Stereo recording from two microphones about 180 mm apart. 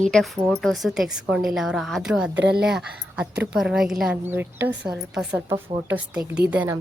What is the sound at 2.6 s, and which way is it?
A woman's voice, 5° right (ahead or behind).